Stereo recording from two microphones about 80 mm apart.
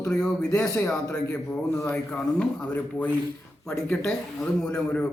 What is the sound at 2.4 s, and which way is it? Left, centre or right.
Speech, centre.